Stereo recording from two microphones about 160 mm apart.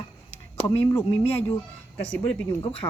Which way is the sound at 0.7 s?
10° left (ahead or behind).